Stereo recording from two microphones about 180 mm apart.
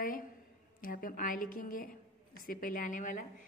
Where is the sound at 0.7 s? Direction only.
50° left (ahead or behind).